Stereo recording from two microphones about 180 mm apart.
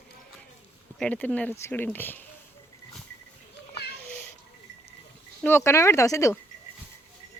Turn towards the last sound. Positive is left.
turn(degrees=15)  # may be behind; listen again after turning